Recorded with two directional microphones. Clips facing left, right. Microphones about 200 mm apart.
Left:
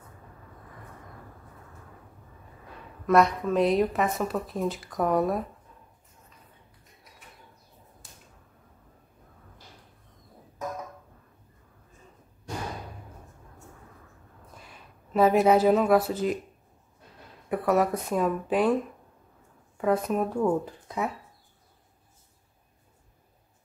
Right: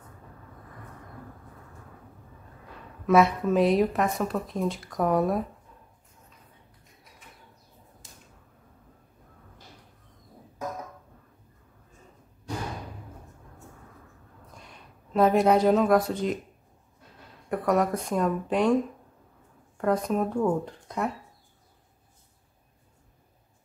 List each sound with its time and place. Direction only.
3.1 s a woman's voice: centre (ahead or behind)
14.5 s speech: 5° left (ahead or behind)
17.5 s a woman's voice: 5° left (ahead or behind)
19.8 s a woman's voice: 5° left (ahead or behind)